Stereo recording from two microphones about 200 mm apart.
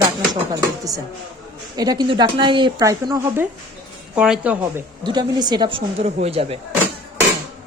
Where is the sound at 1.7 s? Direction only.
20° right (ahead or behind).